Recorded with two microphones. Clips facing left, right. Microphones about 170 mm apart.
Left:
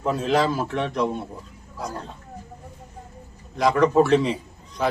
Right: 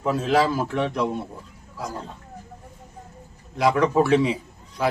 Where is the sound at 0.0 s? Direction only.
5° right (ahead or behind).